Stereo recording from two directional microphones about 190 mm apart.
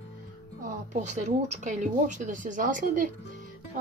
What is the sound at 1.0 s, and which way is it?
Speech, 40° right (ahead or behind).